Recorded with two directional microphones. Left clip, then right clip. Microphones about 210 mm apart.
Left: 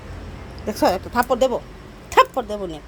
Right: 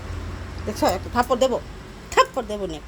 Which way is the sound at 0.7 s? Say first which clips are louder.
Left 3 dB; 20° left (ahead or behind).